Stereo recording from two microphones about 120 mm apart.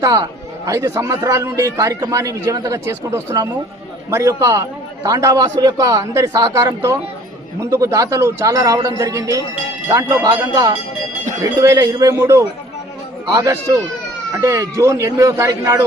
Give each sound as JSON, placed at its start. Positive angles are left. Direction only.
{"t": 0.0, "sound": "a man's voice", "side_deg": -30}